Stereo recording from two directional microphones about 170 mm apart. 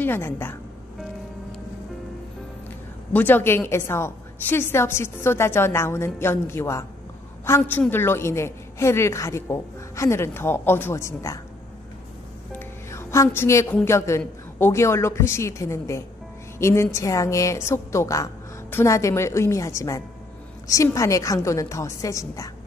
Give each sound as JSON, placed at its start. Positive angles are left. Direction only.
{"t": 0.0, "sound": "a woman's voice", "side_deg": 15}
{"t": 3.1, "sound": "a woman's voice", "side_deg": 10}
{"t": 12.5, "sound": "music", "side_deg": 15}
{"t": 13.8, "sound": "a woman's voice", "side_deg": 15}